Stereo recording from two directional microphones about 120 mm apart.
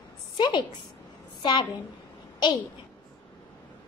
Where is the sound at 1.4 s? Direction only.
35° left (ahead or behind).